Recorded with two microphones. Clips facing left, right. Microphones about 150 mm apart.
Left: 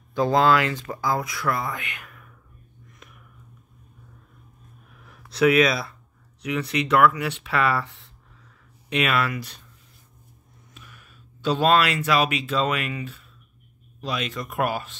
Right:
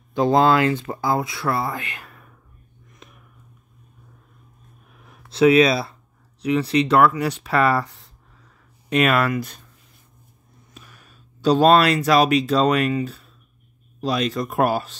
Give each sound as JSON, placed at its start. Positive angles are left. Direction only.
{"t": 0.1, "sound": "speech", "side_deg": -25}
{"t": 5.0, "sound": "a sound", "side_deg": -25}
{"t": 6.4, "sound": "speech", "side_deg": -30}
{"t": 10.7, "sound": "speech", "side_deg": -35}